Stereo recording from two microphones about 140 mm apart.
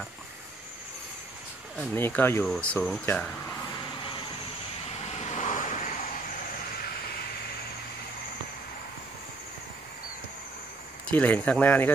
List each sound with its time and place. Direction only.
2.0 s speech: 15° left (ahead or behind)
2.4 s speech: 5° left (ahead or behind)
5.0 s vehicle: 55° left (ahead or behind)
11.1 s speech: 10° left (ahead or behind)